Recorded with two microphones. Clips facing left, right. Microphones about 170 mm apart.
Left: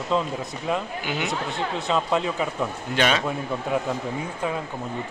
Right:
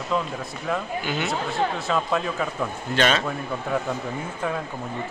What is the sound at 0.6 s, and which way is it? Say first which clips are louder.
A man's voice: right 1 dB; 15° left (ahead or behind).